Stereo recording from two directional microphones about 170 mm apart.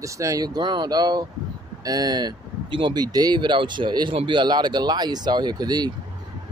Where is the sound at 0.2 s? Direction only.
20° right (ahead or behind).